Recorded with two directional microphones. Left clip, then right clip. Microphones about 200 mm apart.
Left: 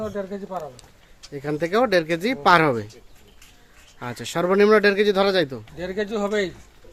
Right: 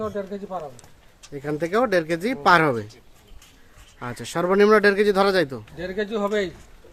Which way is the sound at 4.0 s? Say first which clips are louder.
Left 1 dB; 5° left (ahead or behind).